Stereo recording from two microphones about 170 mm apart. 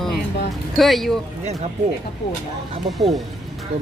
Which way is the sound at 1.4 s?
40° right (ahead or behind).